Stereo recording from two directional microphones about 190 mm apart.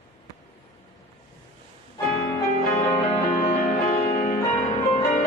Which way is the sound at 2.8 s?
35° left (ahead or behind).